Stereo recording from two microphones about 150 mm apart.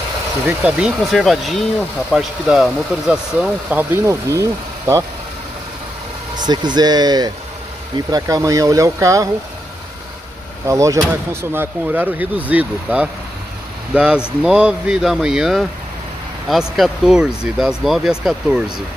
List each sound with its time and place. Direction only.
0.5 s speech: 5° right (ahead or behind)
6.3 s speech: 30° right (ahead or behind)
10.7 s speech: 20° right (ahead or behind); by 18.6 s 5° right (ahead or behind)